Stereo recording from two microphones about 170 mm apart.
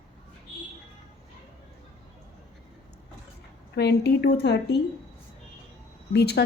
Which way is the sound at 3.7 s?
75° left (ahead or behind).